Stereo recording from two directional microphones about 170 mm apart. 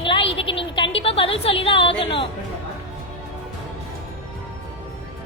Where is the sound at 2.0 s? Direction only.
30° left (ahead or behind).